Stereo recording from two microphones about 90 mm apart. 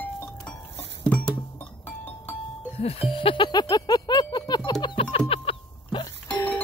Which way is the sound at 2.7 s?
90° left.